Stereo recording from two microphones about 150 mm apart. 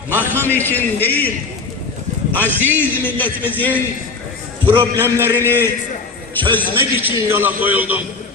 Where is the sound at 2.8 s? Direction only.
10° left (ahead or behind).